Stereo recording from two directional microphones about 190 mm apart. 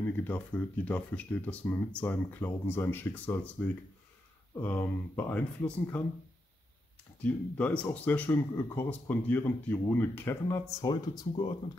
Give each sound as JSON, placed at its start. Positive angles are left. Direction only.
{"t": 0.0, "sound": "speech", "side_deg": 10}
{"t": 7.2, "sound": "speech", "side_deg": 5}